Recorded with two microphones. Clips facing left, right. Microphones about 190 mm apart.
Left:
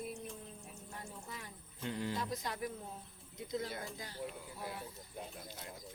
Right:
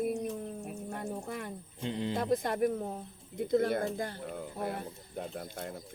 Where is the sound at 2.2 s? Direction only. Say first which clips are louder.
Right 11 dB; 55° right (ahead or behind).